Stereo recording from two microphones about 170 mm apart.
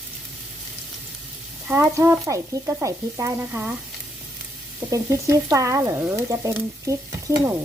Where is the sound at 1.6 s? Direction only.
15° right (ahead or behind).